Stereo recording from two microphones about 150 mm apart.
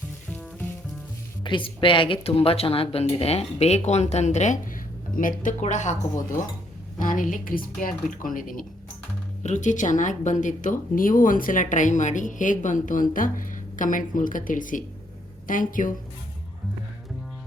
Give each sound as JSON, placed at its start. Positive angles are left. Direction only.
{"t": 1.5, "sound": "speech", "side_deg": 35}
{"t": 7.0, "sound": "speech", "side_deg": 60}
{"t": 9.4, "sound": "speech", "side_deg": 55}